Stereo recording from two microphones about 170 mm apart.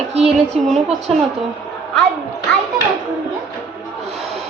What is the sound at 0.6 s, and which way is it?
Speech, centre (ahead or behind).